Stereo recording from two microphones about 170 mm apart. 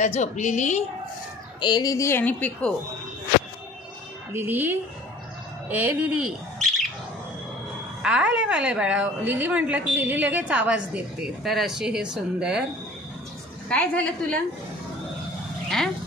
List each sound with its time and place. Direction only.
0.0 s a woman's voice: 45° left (ahead or behind)
1.6 s a woman's voice: 25° left (ahead or behind)
4.3 s a woman's voice: 15° right (ahead or behind)
8.0 s a woman's voice: 5° right (ahead or behind)
13.7 s a woman's voice: 5° left (ahead or behind)